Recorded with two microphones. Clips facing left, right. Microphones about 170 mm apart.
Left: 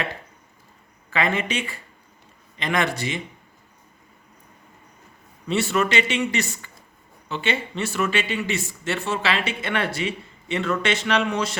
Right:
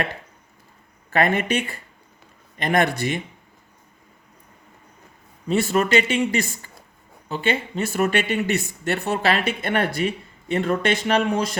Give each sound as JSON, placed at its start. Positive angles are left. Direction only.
{"t": 1.1, "sound": "speech", "side_deg": -55}
{"t": 5.5, "sound": "speech", "side_deg": -45}